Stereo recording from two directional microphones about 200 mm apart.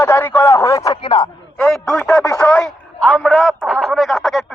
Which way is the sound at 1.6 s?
Centre (ahead or behind).